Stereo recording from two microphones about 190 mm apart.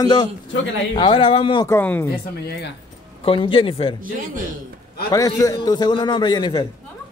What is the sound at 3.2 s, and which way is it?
Speech, 25° left (ahead or behind).